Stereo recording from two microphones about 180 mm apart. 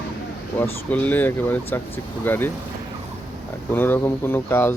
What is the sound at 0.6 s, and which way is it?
Speech, 10° left (ahead or behind).